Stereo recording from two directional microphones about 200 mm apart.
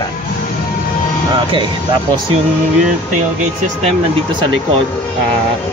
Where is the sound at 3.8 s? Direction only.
25° right (ahead or behind).